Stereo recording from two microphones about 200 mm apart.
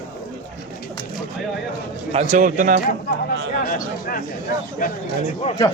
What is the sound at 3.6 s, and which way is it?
Speech, 45° left (ahead or behind).